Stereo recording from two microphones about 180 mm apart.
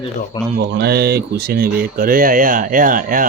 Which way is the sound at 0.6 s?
65° right (ahead or behind).